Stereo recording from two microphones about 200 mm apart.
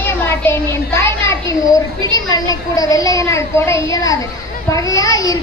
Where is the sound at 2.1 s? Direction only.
20° left (ahead or behind).